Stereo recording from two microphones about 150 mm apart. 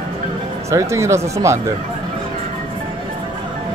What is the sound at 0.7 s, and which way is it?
Speech, 20° right (ahead or behind).